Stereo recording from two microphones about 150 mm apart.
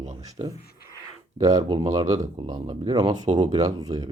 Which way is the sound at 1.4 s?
30° right (ahead or behind).